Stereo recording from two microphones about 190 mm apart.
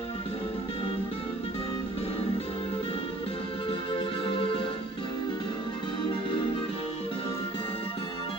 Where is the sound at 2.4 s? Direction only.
25° left (ahead or behind).